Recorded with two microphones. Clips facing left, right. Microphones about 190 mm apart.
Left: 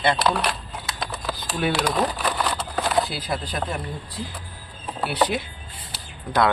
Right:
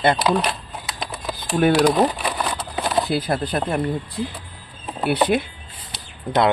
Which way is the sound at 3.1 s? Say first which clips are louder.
Right 7 dB; 55° right (ahead or behind).